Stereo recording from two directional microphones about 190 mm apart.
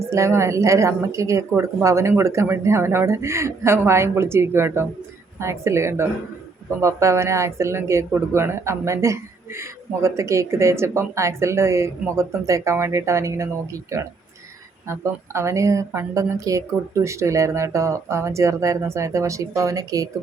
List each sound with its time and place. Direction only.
0.1 s speech: 15° right (ahead or behind)